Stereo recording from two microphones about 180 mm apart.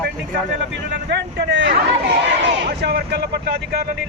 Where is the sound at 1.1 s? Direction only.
75° right (ahead or behind).